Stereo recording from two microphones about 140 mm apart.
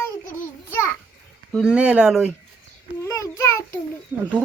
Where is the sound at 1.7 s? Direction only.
10° right (ahead or behind).